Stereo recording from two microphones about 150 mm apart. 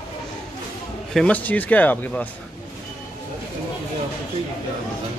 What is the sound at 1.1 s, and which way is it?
A man's voice, 10° left (ahead or behind).